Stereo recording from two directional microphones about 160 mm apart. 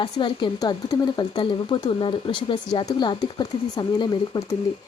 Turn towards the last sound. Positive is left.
turn(degrees=25)  # may be behind; listen again after turning